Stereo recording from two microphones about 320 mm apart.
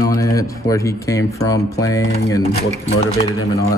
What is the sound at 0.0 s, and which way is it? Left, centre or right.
Speech, centre.